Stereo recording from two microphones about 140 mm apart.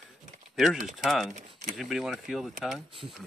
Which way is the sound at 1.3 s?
60° right (ahead or behind).